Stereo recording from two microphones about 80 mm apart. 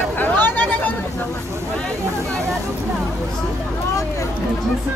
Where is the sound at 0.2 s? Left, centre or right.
Left.